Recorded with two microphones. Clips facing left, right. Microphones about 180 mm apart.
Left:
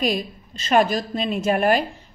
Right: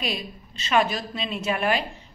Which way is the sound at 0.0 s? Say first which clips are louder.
Left 7 dB; 45° left (ahead or behind).